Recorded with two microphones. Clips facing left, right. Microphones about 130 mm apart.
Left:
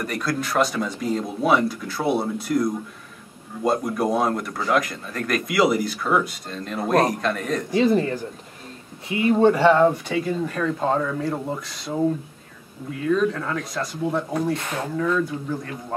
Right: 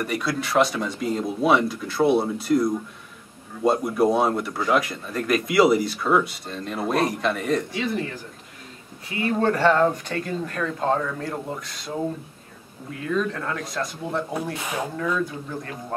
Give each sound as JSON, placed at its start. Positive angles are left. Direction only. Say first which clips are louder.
{"t": 0.0, "sound": "speech", "louder": "even", "side_deg": -5}
{"t": 7.7, "sound": "speech", "louder": "left 8 dB", "side_deg": 35}
{"t": 9.1, "sound": "speech", "louder": "left 5 dB", "side_deg": 15}
{"t": 13.0, "sound": "speech", "louder": "left 4 dB", "side_deg": 0}